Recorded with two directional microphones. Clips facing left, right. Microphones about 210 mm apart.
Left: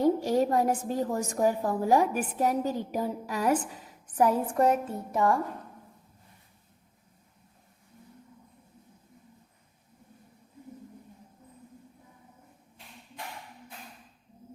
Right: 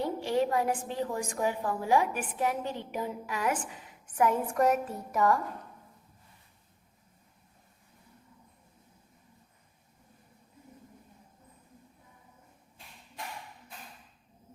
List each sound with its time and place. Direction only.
0.0 s a woman's voice: 40° left (ahead or behind)